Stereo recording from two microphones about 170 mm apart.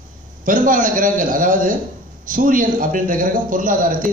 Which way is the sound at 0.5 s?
50° right (ahead or behind).